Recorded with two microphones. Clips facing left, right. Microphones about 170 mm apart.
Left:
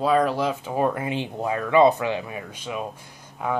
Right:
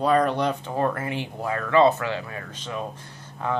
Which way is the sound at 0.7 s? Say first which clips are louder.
Left 2 dB; 15° left (ahead or behind).